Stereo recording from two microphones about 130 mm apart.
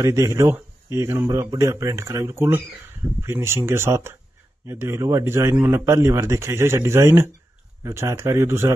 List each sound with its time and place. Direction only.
0.0 s a man's voice: 25° right (ahead or behind)